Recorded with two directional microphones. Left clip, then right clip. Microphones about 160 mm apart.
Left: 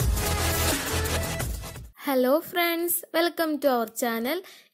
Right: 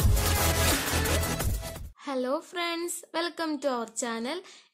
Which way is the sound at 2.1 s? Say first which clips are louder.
Left 7 dB; 35° left (ahead or behind).